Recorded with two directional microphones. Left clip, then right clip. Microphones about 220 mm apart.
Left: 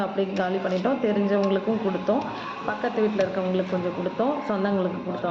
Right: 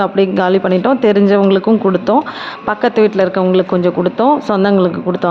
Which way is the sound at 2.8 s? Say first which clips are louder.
Right 13 dB; 45° right (ahead or behind).